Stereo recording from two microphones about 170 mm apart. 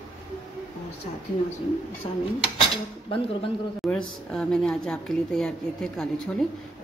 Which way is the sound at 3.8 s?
5° left (ahead or behind).